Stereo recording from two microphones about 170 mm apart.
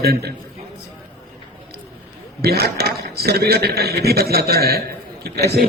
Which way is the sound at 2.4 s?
70° right (ahead or behind).